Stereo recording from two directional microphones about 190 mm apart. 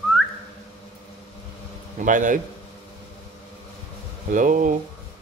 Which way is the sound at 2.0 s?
45° right (ahead or behind).